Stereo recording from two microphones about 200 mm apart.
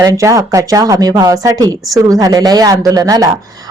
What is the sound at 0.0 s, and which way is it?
Speech, 15° right (ahead or behind).